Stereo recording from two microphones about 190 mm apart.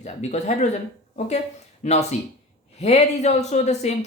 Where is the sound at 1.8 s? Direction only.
35° left (ahead or behind).